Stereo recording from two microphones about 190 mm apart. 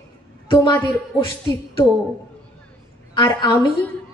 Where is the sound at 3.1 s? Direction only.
20° left (ahead or behind).